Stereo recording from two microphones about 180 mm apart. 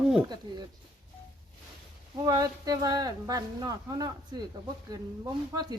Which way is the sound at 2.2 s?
20° right (ahead or behind).